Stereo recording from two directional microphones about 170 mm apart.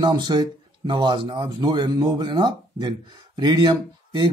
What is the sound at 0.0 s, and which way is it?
Speech, 25° right (ahead or behind).